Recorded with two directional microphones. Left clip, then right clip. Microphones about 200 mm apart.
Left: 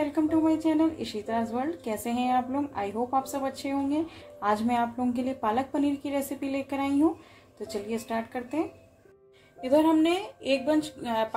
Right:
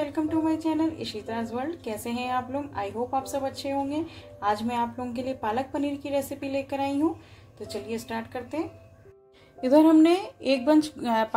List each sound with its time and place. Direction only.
0.0 s a woman's voice: 5° left (ahead or behind)
9.6 s a woman's voice: 30° right (ahead or behind)